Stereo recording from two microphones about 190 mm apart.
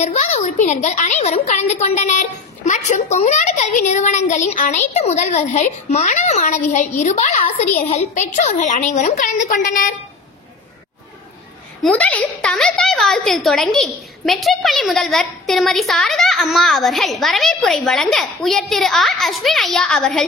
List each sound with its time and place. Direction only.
0.0 s a woman's voice: 35° left (ahead or behind)
11.8 s a woman's voice: 5° left (ahead or behind)